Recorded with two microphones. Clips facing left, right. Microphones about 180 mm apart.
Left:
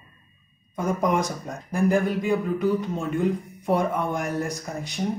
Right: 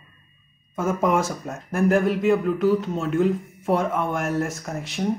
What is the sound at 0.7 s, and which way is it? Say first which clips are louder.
Speech: right 2 dB; 5° right (ahead or behind).